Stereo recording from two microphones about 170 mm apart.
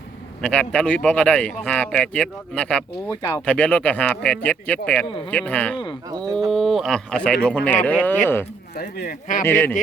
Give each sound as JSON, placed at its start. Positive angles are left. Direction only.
{"t": 0.4, "sound": "speech", "side_deg": 5}
{"t": 3.1, "sound": "speech", "side_deg": 25}
{"t": 3.4, "sound": "speech", "side_deg": 5}
{"t": 5.0, "sound": "speech", "side_deg": 30}
{"t": 5.3, "sound": "speech", "side_deg": 5}
{"t": 8.7, "sound": "speech", "side_deg": 65}
{"t": 9.4, "sound": "speech", "side_deg": 10}